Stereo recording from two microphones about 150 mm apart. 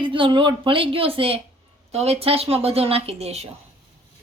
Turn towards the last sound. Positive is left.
turn(degrees=-45)  # may be behind; listen again after turning